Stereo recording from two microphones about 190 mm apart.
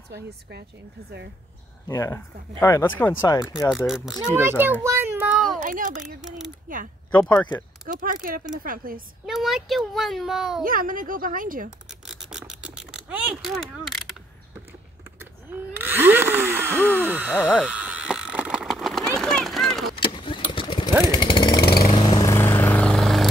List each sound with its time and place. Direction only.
0.1 s speech: 60° right (ahead or behind)
1.9 s speech: 15° left (ahead or behind)
3.7 s a child's voice: centre (ahead or behind)
5.6 s speech: 45° right (ahead or behind)
6.2 s speech: centre (ahead or behind)
7.9 s speech: 45° right (ahead or behind)
9.2 s speech: centre (ahead or behind)
10.6 s speech: 45° right (ahead or behind)
11.9 s a sound: centre (ahead or behind)
15.1 s a sound: 10° right (ahead or behind)
20.0 s vehicle: 25° left (ahead or behind)
21.0 s chainsaw: 25° left (ahead or behind)
21.8 s vehicle: 25° left (ahead or behind); by 23.2 s centre (ahead or behind)